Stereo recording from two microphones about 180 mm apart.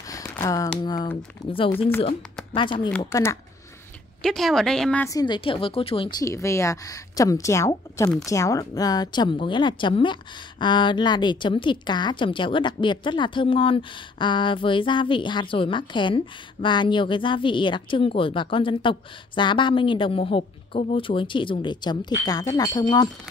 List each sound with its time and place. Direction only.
0.1 s a sound: 20° left (ahead or behind)
0.8 s speech: 20° left (ahead or behind)
3.0 s speech: 15° left (ahead or behind)
4.2 s a woman's voice: centre (ahead or behind)
5.0 s speech: 20° left (ahead or behind)